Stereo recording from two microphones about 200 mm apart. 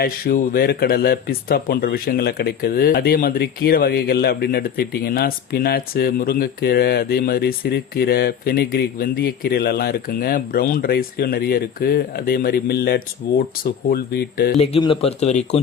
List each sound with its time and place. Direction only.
0.0 s speech: 45° left (ahead or behind)
14.6 s speech: 25° left (ahead or behind)